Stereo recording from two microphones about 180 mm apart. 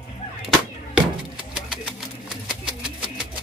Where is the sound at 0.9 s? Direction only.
5° right (ahead or behind).